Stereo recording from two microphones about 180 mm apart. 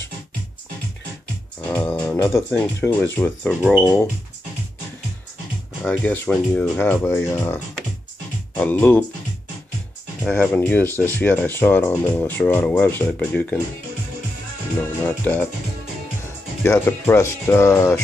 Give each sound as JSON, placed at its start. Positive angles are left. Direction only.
{"t": 1.7, "sound": "speech", "side_deg": 10}
{"t": 5.8, "sound": "speech", "side_deg": 10}
{"t": 10.2, "sound": "speech", "side_deg": 5}
{"t": 15.0, "sound": "speech", "side_deg": 10}
{"t": 16.6, "sound": "speech", "side_deg": 15}